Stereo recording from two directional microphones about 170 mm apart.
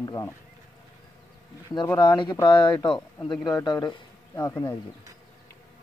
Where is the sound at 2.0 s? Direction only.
25° left (ahead or behind).